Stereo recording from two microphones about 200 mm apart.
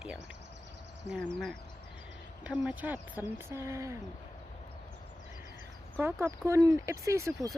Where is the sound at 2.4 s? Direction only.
5° right (ahead or behind).